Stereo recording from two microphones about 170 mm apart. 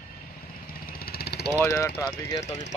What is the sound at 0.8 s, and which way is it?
Vehicle, 65° left (ahead or behind).